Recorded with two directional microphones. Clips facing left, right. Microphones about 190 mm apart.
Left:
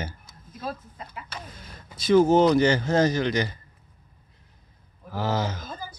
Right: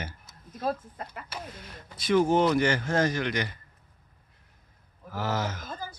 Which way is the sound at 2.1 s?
40° left (ahead or behind).